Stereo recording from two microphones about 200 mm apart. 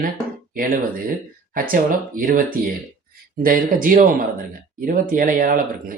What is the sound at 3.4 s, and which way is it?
Speech, 45° right (ahead or behind).